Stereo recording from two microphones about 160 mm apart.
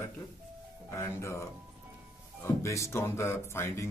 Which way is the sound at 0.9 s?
15° left (ahead or behind).